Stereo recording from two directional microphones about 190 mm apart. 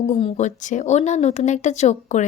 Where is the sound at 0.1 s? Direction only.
40° left (ahead or behind).